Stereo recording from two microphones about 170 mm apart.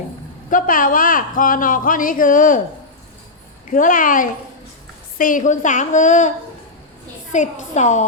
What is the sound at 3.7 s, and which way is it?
A woman's voice, 50° left (ahead or behind).